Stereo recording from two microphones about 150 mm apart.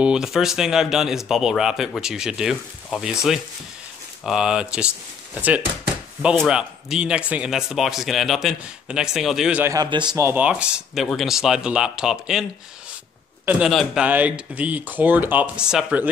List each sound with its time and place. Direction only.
0.0 s speech: 5° right (ahead or behind)
9.7 s a man's voice: 30° right (ahead or behind)
10.1 s speech: 15° right (ahead or behind)
13.5 s speech: centre (ahead or behind)